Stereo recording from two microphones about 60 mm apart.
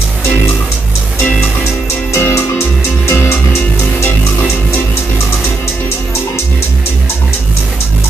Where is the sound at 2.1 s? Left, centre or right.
Left.